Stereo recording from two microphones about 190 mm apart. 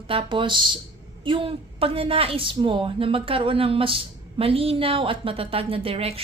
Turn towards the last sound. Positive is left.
turn(degrees=-30)  # may be behind; listen again after turning